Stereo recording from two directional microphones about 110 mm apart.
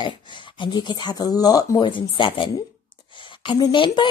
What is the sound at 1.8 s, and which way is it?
Speech, 50° left (ahead or behind).